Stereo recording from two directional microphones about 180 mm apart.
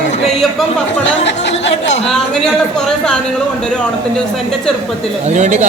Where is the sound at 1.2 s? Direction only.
75° left (ahead or behind).